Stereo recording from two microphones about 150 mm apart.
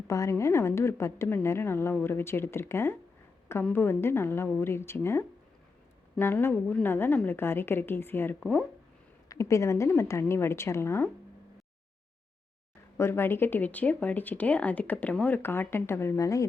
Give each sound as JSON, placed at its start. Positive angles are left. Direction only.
{"t": 0.1, "sound": "speech", "side_deg": 20}
{"t": 6.5, "sound": "speech", "side_deg": 5}
{"t": 6.8, "sound": "speech", "side_deg": 15}
{"t": 9.3, "sound": "speech", "side_deg": 20}
{"t": 13.0, "sound": "speech", "side_deg": 15}